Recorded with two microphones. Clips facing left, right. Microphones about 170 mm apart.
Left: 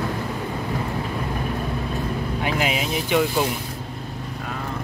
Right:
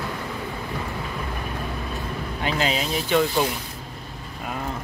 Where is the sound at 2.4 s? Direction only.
15° left (ahead or behind).